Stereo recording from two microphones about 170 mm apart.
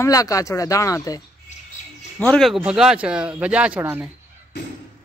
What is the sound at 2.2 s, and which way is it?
Speech, 5° left (ahead or behind).